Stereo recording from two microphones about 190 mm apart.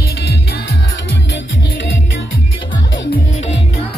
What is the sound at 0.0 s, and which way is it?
Music, 55° left (ahead or behind).